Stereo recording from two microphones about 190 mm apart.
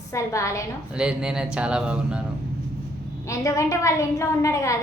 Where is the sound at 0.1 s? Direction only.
15° left (ahead or behind).